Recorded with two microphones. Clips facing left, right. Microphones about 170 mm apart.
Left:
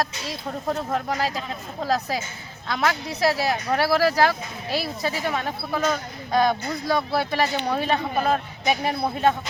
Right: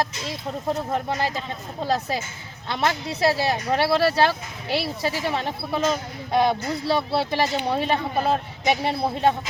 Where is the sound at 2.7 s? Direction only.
25° right (ahead or behind).